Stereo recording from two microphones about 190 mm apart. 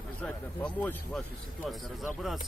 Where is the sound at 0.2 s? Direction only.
5° left (ahead or behind).